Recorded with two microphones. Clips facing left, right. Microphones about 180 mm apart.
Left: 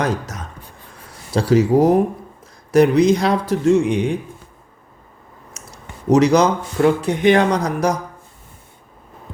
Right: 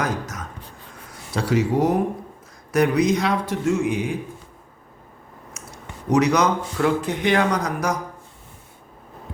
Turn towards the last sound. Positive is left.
turn(degrees=35)  # may be behind; listen again after turning